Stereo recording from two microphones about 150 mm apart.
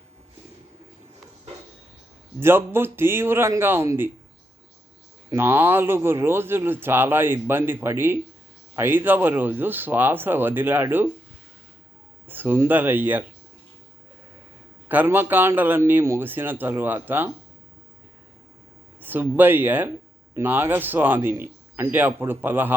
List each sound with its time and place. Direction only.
2.4 s speech: 15° right (ahead or behind)
5.3 s speech: 15° right (ahead or behind)
12.3 s speech: 15° right (ahead or behind)
14.8 s speech: 15° right (ahead or behind)
18.9 s speech: 15° right (ahead or behind)